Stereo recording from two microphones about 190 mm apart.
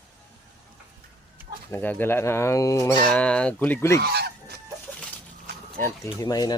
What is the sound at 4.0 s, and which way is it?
Fowl, 60° right (ahead or behind).